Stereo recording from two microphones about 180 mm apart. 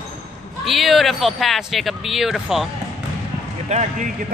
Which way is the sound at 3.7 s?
40° right (ahead or behind).